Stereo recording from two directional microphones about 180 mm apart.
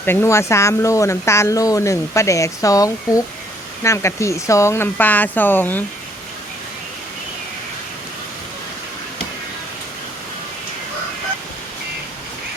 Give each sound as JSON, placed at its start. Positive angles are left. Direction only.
{"t": 0.0, "sound": "speech", "side_deg": 10}